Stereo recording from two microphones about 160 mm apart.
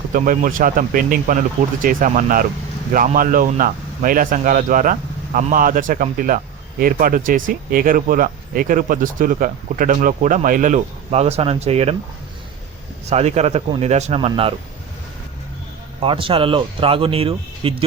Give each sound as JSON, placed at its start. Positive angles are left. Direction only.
{"t": 0.1, "sound": "speech", "side_deg": -60}
{"t": 13.1, "sound": "speech", "side_deg": -45}
{"t": 16.0, "sound": "speech", "side_deg": -35}